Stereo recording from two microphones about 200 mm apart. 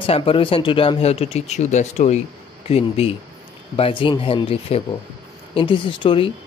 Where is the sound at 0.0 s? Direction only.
30° left (ahead or behind).